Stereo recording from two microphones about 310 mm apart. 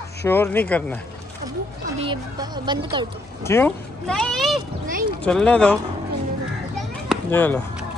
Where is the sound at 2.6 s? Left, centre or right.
Centre.